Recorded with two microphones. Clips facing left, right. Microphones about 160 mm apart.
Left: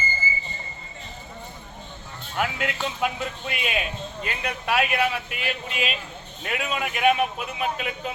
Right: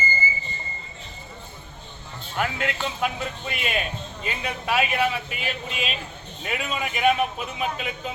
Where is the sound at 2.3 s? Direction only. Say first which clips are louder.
Even; 5° left (ahead or behind).